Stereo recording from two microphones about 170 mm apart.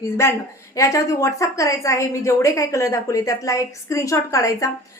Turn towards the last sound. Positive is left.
turn(degrees=20)  # may be behind; listen again after turning